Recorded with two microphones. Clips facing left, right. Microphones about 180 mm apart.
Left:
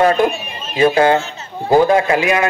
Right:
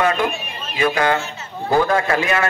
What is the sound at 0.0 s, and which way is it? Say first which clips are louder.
A man's voice: left 6 dB; 35° left (ahead or behind).